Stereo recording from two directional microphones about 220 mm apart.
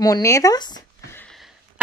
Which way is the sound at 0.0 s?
15° left (ahead or behind).